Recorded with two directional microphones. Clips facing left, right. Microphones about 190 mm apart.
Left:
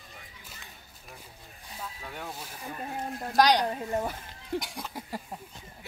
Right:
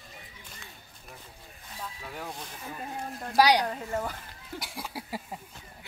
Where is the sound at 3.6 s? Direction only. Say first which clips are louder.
Left 2 dB; 20° left (ahead or behind).